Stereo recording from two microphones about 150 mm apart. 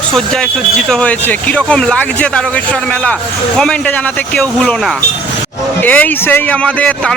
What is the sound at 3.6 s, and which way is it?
Speech, 5° left (ahead or behind).